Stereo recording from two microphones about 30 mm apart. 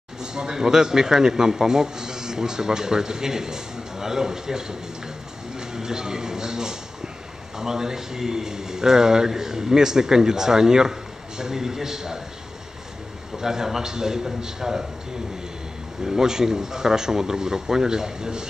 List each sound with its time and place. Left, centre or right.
0.2 s speech: right
13.4 s speech: centre
16.0 s speech: centre